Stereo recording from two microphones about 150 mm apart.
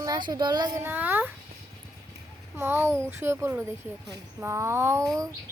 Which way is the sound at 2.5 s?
15° right (ahead or behind).